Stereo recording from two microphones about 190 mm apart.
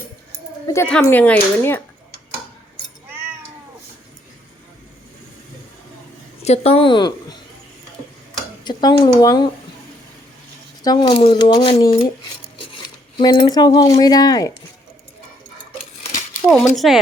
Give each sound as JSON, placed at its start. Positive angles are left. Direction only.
{"t": 0.7, "sound": "speech", "side_deg": 10}
{"t": 6.4, "sound": "speech", "side_deg": 35}
{"t": 8.6, "sound": "speech", "side_deg": 20}
{"t": 10.8, "sound": "speech", "side_deg": 20}
{"t": 13.1, "sound": "speech", "side_deg": 25}
{"t": 16.5, "sound": "speech", "side_deg": 0}